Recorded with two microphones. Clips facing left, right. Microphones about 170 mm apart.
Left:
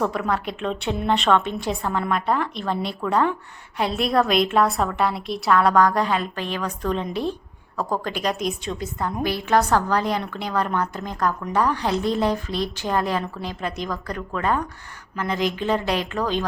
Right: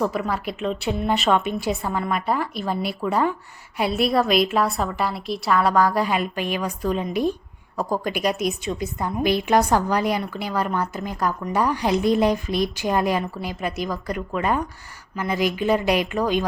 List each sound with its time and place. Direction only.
0.0 s a woman's voice: 5° right (ahead or behind)